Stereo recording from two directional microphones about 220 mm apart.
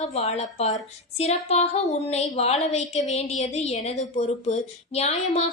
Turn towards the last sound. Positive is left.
turn(degrees=30)  # may be behind; listen again after turning